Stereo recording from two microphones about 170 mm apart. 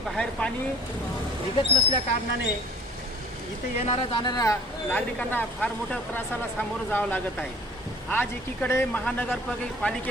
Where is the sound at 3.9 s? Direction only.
25° left (ahead or behind).